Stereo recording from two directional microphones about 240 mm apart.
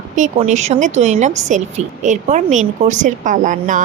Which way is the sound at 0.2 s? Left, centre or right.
Right.